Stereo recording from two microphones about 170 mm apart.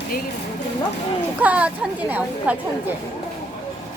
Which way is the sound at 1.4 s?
10° right (ahead or behind).